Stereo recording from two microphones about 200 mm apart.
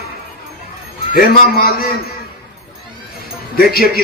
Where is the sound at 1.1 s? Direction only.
50° left (ahead or behind).